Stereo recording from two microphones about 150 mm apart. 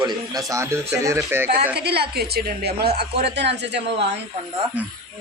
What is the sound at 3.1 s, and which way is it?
Speech, 45° right (ahead or behind).